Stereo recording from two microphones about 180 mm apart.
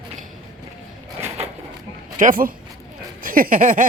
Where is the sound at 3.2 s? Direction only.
50° right (ahead or behind).